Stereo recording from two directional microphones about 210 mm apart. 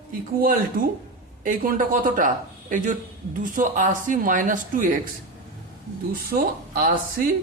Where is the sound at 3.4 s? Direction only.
40° right (ahead or behind).